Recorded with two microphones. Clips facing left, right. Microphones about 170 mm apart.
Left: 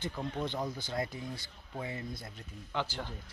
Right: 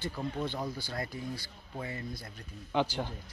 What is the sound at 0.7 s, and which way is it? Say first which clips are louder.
Speech: left 1 dB; 20° left (ahead or behind).